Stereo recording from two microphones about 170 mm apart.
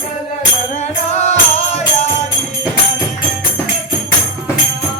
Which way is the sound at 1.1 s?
40° left (ahead or behind).